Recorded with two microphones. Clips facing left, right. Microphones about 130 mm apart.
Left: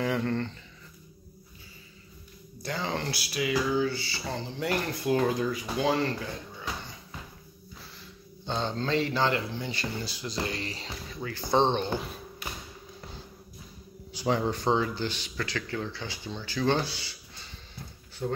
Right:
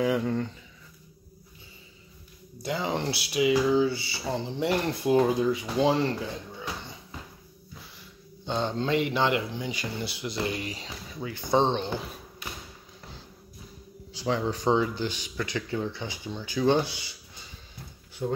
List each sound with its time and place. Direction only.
0.0 s speech: 5° right (ahead or behind)
2.6 s speech: 15° right (ahead or behind)
8.5 s speech: 10° right (ahead or behind)
11.7 s speech: centre (ahead or behind)
14.2 s speech: 5° left (ahead or behind)
14.5 s speech: 15° right (ahead or behind)
18.2 s speech: 10° right (ahead or behind)